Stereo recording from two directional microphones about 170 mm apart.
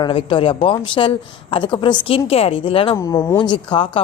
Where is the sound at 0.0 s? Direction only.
30° left (ahead or behind).